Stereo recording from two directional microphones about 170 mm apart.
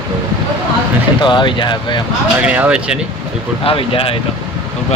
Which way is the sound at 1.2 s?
25° left (ahead or behind).